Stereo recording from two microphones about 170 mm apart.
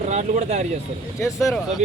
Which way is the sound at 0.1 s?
40° right (ahead or behind).